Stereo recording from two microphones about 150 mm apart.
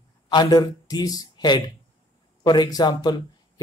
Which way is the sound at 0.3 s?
25° left (ahead or behind).